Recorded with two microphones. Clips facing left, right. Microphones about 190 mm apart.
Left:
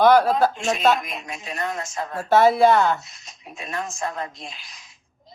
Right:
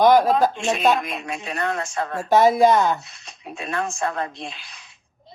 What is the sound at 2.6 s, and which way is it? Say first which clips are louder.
Speech: even; 15° right (ahead or behind).